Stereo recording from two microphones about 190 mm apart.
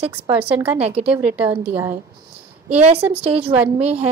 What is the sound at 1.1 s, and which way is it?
Speech, 10° right (ahead or behind).